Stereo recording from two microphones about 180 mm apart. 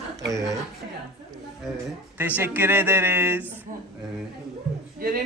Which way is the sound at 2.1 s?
10° right (ahead or behind).